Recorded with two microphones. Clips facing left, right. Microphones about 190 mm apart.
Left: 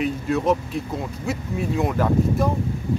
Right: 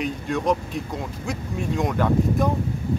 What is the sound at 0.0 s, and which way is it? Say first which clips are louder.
Speech: left 3 dB; 5° left (ahead or behind).